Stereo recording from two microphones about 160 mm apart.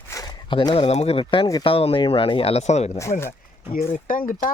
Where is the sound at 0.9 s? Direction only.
40° left (ahead or behind).